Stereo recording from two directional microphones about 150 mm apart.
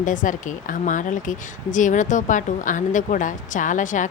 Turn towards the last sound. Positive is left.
turn(degrees=55)  # may be behind; listen again after turning